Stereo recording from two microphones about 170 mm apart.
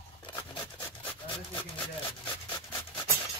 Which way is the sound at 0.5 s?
30° left (ahead or behind).